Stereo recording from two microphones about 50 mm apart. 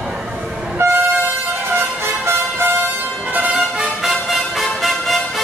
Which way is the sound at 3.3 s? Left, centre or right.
Right.